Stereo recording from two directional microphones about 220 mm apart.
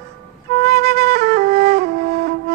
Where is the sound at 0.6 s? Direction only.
45° right (ahead or behind).